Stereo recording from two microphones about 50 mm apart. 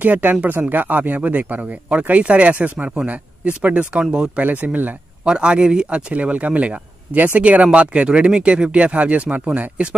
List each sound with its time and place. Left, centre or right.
0.0 s speech: right; by 4.3 s centre
4.4 s speech: right
5.2 s a man's voice: centre